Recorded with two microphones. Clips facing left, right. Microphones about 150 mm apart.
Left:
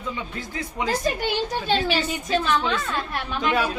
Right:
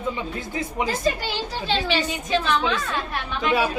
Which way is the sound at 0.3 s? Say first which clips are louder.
Right 3 dB; 20° right (ahead or behind).